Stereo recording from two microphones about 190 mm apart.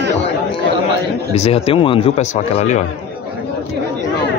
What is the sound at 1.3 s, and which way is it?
Speech, 30° left (ahead or behind).